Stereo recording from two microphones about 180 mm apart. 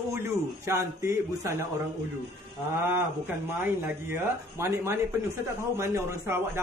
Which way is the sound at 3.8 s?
10° right (ahead or behind).